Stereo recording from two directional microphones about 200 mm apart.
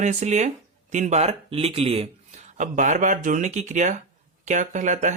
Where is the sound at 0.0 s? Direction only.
35° right (ahead or behind).